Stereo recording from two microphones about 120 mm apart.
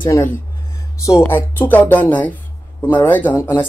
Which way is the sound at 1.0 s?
25° left (ahead or behind).